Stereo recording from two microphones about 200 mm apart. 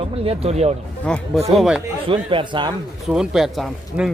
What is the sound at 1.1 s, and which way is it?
Speech, 5° left (ahead or behind).